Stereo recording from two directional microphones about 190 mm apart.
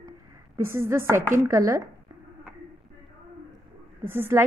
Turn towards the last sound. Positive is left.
turn(degrees=-10)  # may be behind; listen again after turning